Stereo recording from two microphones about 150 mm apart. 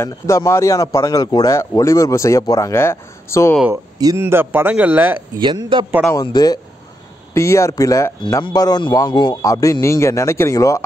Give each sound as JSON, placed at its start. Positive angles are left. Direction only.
{"t": 0.0, "sound": "speech", "side_deg": 20}
{"t": 3.7, "sound": "speech", "side_deg": -25}
{"t": 4.2, "sound": "speech", "side_deg": -15}
{"t": 5.4, "sound": "a man's voice", "side_deg": -30}
{"t": 6.2, "sound": "speech", "side_deg": 25}